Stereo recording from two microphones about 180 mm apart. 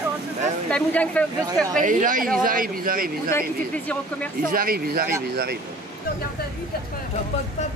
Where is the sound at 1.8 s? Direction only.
45° right (ahead or behind).